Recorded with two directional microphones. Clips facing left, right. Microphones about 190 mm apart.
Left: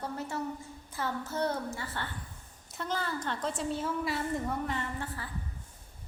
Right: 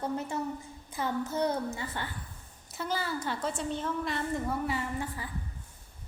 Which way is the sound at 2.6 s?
5° right (ahead or behind).